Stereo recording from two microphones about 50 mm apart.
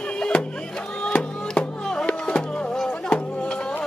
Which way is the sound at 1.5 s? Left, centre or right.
Centre.